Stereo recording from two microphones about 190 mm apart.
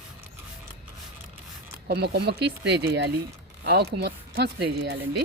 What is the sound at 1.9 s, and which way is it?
Speech, 60° right (ahead or behind).